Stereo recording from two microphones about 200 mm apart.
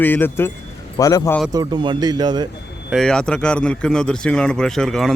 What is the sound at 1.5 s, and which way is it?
Speech, 20° right (ahead or behind).